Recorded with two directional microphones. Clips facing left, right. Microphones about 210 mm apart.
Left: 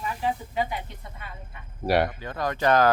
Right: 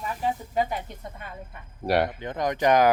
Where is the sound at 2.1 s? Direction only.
20° right (ahead or behind).